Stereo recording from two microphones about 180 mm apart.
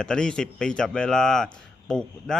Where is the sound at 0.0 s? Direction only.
5° left (ahead or behind).